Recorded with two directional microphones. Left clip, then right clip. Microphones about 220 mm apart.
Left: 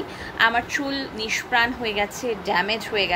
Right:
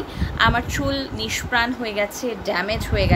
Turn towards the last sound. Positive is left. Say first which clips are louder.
# even
turn(degrees=-15)  # may be behind; listen again after turning